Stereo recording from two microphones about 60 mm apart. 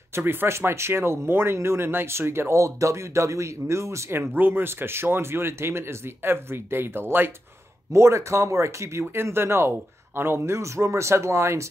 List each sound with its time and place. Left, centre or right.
0.1 s speech: right
2.6 s speech: right
4.3 s speech: right
7.9 s speech: right
9.0 s speech: right